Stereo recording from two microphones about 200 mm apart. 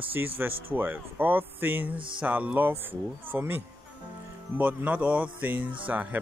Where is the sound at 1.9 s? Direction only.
25° right (ahead or behind).